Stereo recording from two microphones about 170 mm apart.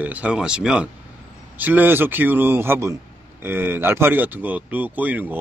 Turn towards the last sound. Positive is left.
turn(degrees=-10)  # may be behind; listen again after turning